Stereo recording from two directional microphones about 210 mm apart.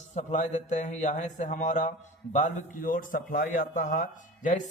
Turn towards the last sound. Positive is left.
turn(degrees=40)  # may be behind; listen again after turning